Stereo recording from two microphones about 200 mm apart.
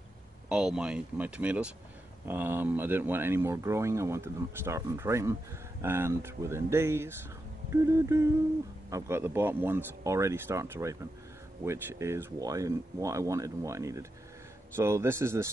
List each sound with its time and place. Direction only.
0.5 s speech: 5° right (ahead or behind)
8.9 s speech: 10° right (ahead or behind)